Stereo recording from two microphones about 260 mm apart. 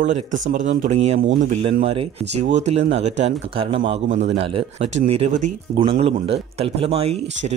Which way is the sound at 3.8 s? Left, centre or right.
Right.